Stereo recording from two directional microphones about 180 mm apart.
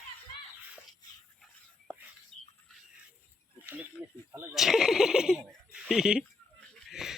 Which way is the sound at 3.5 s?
15° right (ahead or behind).